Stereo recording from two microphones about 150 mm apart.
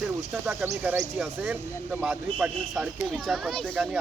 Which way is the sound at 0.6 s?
20° right (ahead or behind).